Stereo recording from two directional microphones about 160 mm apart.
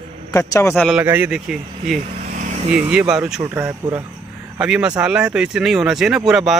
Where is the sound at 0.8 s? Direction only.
10° right (ahead or behind).